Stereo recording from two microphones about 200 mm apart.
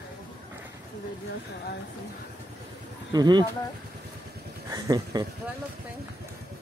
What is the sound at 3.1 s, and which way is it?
Speech, 20° right (ahead or behind).